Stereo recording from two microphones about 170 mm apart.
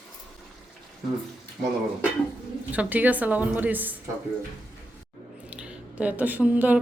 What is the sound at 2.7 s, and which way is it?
A woman's voice, 10° right (ahead or behind).